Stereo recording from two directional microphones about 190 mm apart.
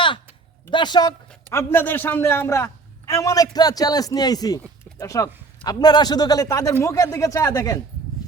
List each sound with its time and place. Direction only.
0.7 s a man's voice: 25° left (ahead or behind)
1.3 s a man's voice: 10° left (ahead or behind)